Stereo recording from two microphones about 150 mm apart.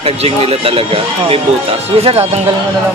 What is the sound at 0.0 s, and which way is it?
Speech, 40° right (ahead or behind).